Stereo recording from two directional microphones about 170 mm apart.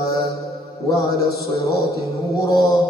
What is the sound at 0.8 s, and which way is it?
Speech, 20° left (ahead or behind).